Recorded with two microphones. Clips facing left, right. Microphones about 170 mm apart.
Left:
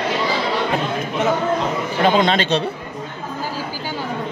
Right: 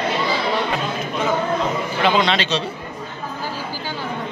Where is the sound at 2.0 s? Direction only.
45° left (ahead or behind).